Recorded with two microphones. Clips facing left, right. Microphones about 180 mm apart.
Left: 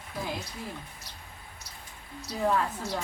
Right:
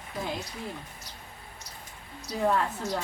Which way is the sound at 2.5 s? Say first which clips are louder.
Right 1 dB; 5° right (ahead or behind).